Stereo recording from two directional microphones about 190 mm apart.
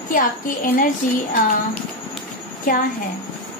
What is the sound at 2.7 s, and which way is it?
Speech, 45° left (ahead or behind).